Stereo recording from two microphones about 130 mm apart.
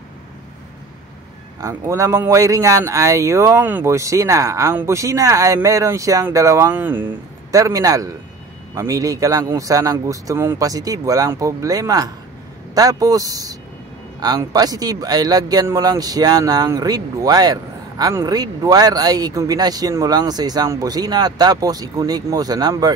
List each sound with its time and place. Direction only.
1.6 s a man's voice: 25° right (ahead or behind)
7.5 s a man's voice: 25° right (ahead or behind)